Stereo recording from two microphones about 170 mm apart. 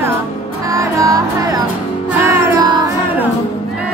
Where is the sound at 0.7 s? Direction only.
20° right (ahead or behind).